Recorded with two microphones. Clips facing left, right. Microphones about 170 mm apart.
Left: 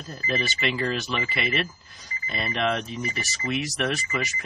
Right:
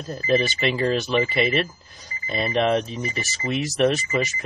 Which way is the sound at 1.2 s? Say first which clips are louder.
Right 6 dB; 40° right (ahead or behind).